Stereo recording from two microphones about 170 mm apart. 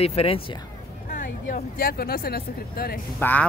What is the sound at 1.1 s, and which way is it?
Speech, 50° left (ahead or behind).